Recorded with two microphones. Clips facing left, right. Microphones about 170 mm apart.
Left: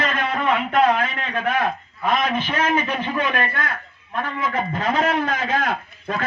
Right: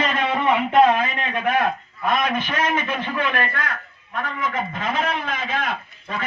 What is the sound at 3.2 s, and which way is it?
Speech, 15° left (ahead or behind).